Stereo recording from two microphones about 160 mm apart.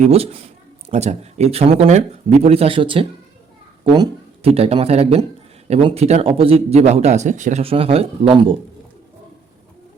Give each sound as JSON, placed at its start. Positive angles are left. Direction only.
{"t": 0.0, "sound": "speech", "side_deg": -40}
{"t": 4.4, "sound": "speech", "side_deg": -40}